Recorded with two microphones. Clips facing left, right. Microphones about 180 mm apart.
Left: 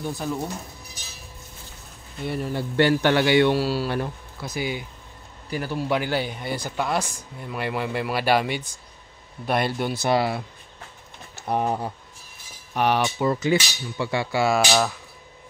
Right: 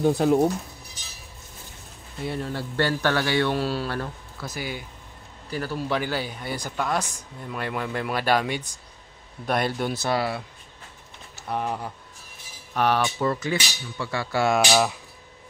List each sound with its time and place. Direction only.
0.0 s speech: 75° right (ahead or behind)
2.2 s speech: 5° left (ahead or behind)
2.5 s a man's voice: 20° left (ahead or behind)
3.5 s speech: 5° left (ahead or behind)
10.0 s a man's voice: 20° left (ahead or behind)
11.4 s speech: 40° left (ahead or behind)
12.7 s speech: 15° left (ahead or behind)
14.3 s speech: 10° left (ahead or behind)